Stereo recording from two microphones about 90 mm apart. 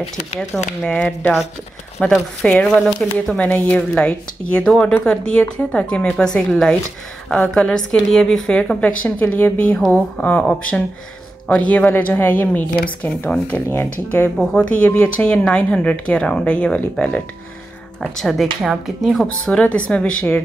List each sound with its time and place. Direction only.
0.4 s speech: 10° left (ahead or behind)
3.3 s speech: 15° left (ahead or behind)
9.8 s speech: 5° left (ahead or behind)
11.4 s speech: 15° left (ahead or behind)
14.4 s speech: 10° left (ahead or behind)
18.1 s speech: centre (ahead or behind)
19.2 s speech: 10° left (ahead or behind)